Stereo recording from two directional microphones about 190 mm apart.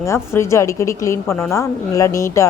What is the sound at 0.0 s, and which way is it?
A woman's voice, 15° left (ahead or behind).